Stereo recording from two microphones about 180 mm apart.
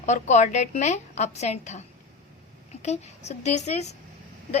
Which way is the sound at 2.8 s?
35° left (ahead or behind).